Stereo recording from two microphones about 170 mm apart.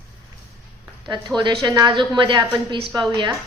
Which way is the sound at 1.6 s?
25° right (ahead or behind).